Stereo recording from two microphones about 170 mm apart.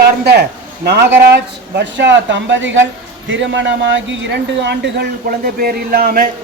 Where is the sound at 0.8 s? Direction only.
75° right (ahead or behind).